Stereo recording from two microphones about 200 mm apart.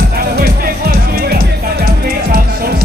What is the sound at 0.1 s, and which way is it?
Music, 50° right (ahead or behind).